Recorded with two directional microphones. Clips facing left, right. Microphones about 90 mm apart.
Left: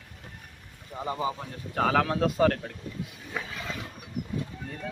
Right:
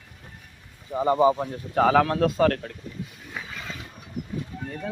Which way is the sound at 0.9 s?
75° right (ahead or behind).